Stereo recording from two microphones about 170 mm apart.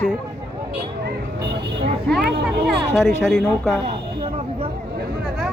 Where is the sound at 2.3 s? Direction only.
70° right (ahead or behind).